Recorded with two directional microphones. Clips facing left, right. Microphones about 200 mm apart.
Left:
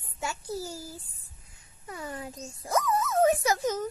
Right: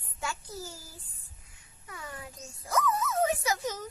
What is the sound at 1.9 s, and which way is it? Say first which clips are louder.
Speech: left 6 dB; 40° left (ahead or behind).